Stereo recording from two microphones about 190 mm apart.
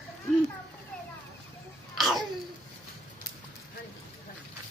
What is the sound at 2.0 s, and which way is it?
Babbling, centre (ahead or behind).